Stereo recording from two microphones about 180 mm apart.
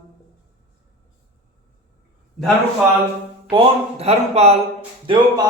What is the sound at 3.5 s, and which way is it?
Speech, 35° right (ahead or behind).